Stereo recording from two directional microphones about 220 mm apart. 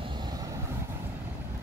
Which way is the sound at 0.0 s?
20° right (ahead or behind).